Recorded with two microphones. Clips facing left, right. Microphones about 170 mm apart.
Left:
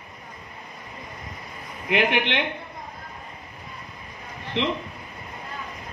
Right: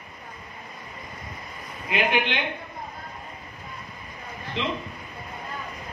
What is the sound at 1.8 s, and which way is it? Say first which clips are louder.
Speech: left 2 dB; 80° left.